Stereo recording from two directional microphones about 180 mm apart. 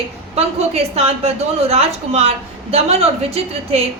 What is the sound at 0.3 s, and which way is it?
A woman's voice, 35° right (ahead or behind).